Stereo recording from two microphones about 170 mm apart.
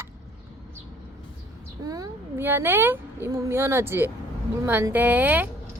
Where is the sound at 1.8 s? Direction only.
20° right (ahead or behind).